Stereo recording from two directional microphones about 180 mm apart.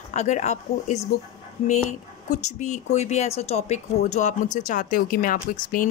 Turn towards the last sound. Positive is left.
turn(degrees=45)  # may be behind; listen again after turning